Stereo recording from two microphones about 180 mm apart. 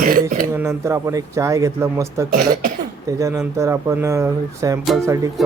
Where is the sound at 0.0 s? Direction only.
55° right (ahead or behind).